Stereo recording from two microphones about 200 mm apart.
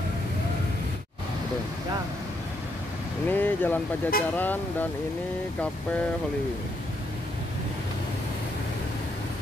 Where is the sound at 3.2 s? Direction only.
10° left (ahead or behind).